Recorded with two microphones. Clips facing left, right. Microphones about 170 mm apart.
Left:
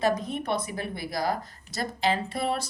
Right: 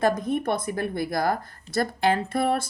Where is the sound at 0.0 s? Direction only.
50° right (ahead or behind).